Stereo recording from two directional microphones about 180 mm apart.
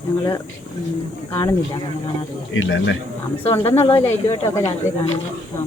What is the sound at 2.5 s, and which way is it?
Speech, 90° left.